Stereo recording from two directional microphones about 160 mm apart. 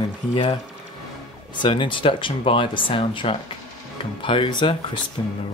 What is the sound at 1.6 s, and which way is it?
Speech, 30° left (ahead or behind).